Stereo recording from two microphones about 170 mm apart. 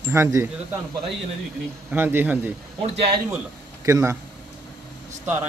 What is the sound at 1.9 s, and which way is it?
Speech, 10° right (ahead or behind).